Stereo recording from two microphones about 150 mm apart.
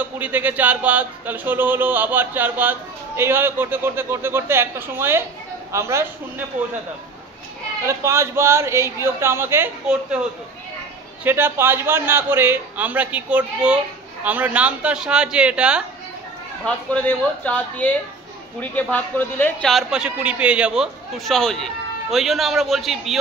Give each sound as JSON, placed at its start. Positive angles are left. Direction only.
{"t": 0.0, "sound": "speech", "side_deg": -10}
{"t": 7.8, "sound": "speech", "side_deg": -20}
{"t": 11.2, "sound": "speech", "side_deg": -15}
{"t": 16.6, "sound": "speech", "side_deg": 10}
{"t": 19.7, "sound": "a man's voice", "side_deg": -5}